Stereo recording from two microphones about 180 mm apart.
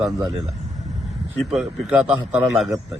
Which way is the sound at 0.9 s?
Centre (ahead or behind).